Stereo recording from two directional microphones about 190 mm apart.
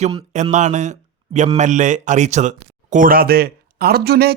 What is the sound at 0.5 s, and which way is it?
Speech, 40° right (ahead or behind).